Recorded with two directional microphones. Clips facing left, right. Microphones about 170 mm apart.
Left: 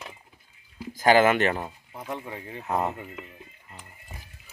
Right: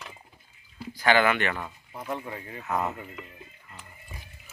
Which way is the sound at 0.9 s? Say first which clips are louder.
Left 4 dB; 40° left (ahead or behind).